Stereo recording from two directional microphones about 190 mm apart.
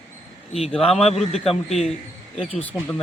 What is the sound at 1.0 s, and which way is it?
Speech, 35° left (ahead or behind).